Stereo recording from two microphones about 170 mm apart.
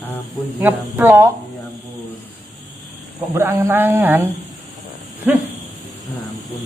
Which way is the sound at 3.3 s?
15° right (ahead or behind).